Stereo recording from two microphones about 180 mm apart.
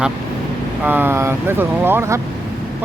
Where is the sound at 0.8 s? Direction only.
10° right (ahead or behind).